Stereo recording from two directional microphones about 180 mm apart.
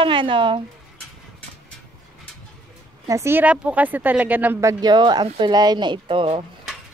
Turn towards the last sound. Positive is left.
turn(degrees=-30)  # may be behind; listen again after turning